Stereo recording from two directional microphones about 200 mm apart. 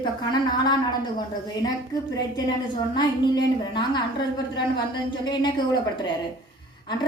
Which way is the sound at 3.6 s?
20° left (ahead or behind).